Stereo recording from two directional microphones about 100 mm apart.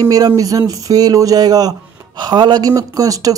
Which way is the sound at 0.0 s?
40° right (ahead or behind).